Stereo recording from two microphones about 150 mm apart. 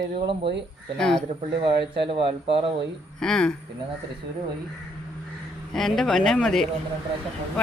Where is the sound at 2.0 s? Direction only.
35° right (ahead or behind).